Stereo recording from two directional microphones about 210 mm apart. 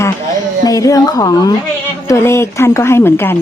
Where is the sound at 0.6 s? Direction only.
15° left (ahead or behind).